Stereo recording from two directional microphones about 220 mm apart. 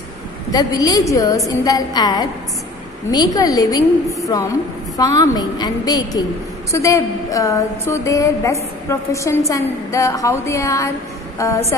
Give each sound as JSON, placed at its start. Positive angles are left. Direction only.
{"t": 0.5, "sound": "a woman's voice", "side_deg": 15}
{"t": 3.3, "sound": "a woman's voice", "side_deg": 15}